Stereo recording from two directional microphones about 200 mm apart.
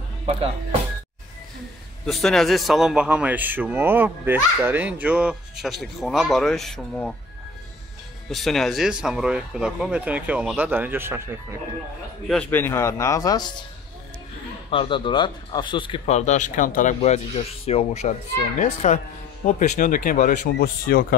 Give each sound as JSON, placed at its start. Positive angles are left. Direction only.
{"t": 0.3, "sound": "speech", "side_deg": -30}
{"t": 2.0, "sound": "a man's voice", "side_deg": 0}
{"t": 8.3, "sound": "a man's voice", "side_deg": 0}
{"t": 12.3, "sound": "a man's voice", "side_deg": 10}
{"t": 14.7, "sound": "speech", "side_deg": 25}